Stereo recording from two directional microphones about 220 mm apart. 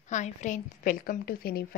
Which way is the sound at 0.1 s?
35° left (ahead or behind).